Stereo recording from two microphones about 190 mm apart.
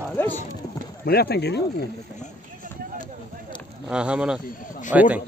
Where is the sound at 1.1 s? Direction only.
55° left (ahead or behind).